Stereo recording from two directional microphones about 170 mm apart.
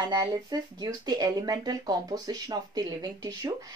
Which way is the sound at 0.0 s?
20° right (ahead or behind).